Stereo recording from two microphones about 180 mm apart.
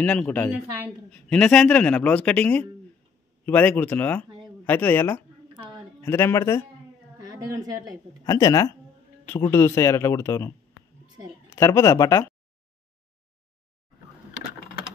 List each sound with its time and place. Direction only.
0.0 s speech: 5° left (ahead or behind)
7.2 s a woman's voice: 20° right (ahead or behind)
8.3 s speech: 20° left (ahead or behind)
11.5 s speech: 15° left (ahead or behind)